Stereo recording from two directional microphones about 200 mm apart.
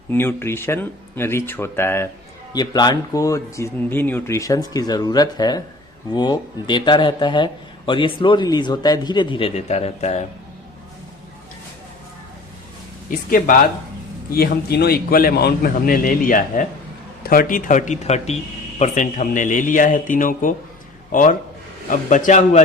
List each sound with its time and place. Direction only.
0.1 s speech: 10° left (ahead or behind); by 10.2 s 35° left (ahead or behind)
13.1 s a man's voice: 40° left (ahead or behind)